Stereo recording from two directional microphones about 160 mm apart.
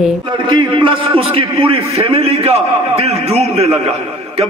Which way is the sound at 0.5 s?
30° right (ahead or behind).